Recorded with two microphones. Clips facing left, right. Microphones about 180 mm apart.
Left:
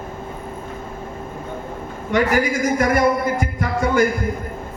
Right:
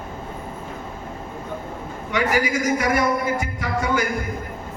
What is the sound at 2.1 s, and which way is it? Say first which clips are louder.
Speech: left 3 dB; 50° left (ahead or behind).